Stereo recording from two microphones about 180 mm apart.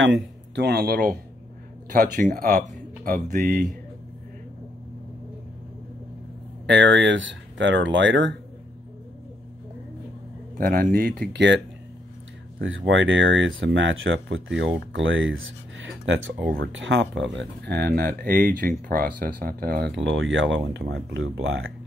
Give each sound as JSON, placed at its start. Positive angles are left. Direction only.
{"t": 0.0, "sound": "speech", "side_deg": -80}
{"t": 6.6, "sound": "speech", "side_deg": -75}
{"t": 10.6, "sound": "speech", "side_deg": -55}
{"t": 11.3, "sound": "speech", "side_deg": -80}
{"t": 12.5, "sound": "speech", "side_deg": -90}